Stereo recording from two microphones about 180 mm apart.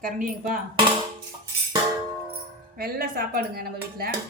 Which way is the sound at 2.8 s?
60° right (ahead or behind).